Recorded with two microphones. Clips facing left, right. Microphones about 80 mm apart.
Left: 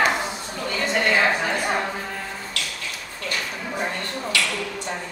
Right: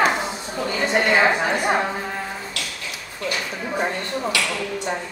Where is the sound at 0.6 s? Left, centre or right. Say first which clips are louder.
Right 2 dB; centre.